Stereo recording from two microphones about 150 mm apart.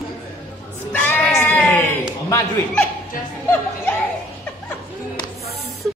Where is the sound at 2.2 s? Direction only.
20° left (ahead or behind).